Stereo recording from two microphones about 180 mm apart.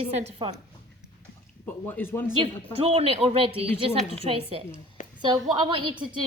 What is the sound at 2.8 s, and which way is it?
A woman's voice, 35° right (ahead or behind).